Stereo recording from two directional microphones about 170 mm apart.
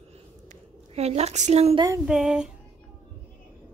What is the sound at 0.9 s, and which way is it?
Speech, 40° right (ahead or behind).